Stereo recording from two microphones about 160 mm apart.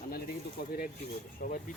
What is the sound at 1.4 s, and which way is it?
Speech, 60° left (ahead or behind).